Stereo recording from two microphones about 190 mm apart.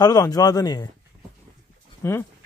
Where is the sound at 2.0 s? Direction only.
10° left (ahead or behind).